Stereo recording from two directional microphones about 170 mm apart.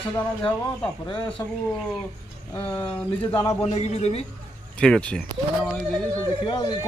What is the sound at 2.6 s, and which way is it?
Speech, 30° left (ahead or behind).